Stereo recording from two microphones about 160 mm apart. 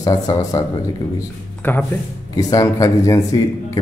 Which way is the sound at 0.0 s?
20° left (ahead or behind).